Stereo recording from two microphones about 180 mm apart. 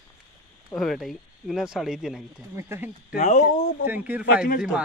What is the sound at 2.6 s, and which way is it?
Speech, 10° right (ahead or behind).